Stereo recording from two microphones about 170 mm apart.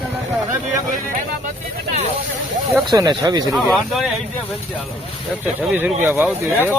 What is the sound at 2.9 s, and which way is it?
Speech, 25° right (ahead or behind).